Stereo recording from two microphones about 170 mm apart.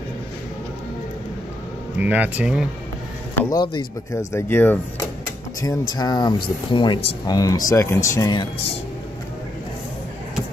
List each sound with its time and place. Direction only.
2.0 s speech: 10° right (ahead or behind)
3.3 s speech: 20° left (ahead or behind)